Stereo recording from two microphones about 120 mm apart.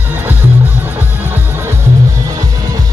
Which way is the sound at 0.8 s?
15° right (ahead or behind).